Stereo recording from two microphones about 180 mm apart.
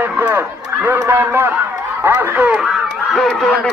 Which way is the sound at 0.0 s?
10° right (ahead or behind).